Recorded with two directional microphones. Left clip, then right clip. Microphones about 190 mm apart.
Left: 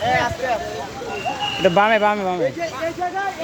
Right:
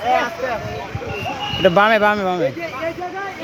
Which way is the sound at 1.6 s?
5° left (ahead or behind).